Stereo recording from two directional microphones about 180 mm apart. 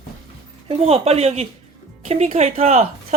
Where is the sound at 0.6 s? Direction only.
35° right (ahead or behind).